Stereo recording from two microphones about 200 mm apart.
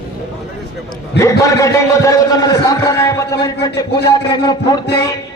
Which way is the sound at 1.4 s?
15° left (ahead or behind).